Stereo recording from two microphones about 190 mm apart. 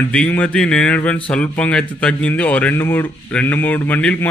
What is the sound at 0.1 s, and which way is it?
Speech, 5° left (ahead or behind).